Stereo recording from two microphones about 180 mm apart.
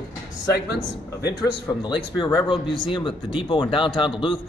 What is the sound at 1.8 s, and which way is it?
Speech, 25° left (ahead or behind).